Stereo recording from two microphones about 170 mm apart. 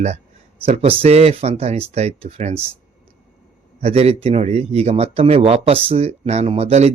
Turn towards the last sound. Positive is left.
turn(degrees=-40)  # may be behind; listen again after turning